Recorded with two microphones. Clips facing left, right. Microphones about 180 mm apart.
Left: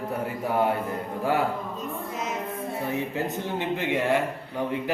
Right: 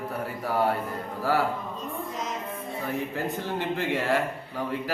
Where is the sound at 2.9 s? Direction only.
20° left (ahead or behind).